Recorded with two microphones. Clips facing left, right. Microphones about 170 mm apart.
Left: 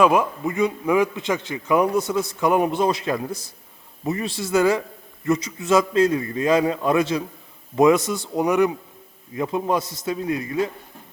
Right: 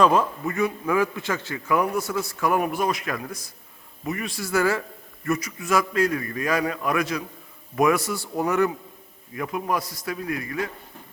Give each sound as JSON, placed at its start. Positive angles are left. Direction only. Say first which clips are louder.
{"t": 0.0, "sound": "a man's voice", "louder": "left 2 dB", "side_deg": 10}